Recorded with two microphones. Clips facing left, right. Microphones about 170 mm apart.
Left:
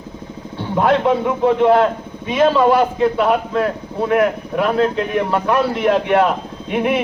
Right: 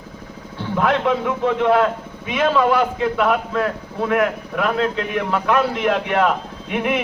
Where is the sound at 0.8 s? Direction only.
35° left (ahead or behind).